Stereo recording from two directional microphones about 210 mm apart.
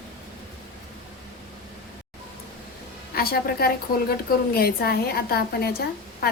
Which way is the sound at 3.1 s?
45° left (ahead or behind).